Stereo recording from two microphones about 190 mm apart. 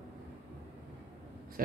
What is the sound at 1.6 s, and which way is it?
Speech, 50° right (ahead or behind).